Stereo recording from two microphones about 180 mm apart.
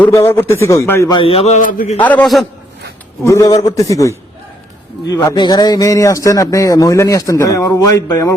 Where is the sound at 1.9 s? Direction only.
10° left (ahead or behind).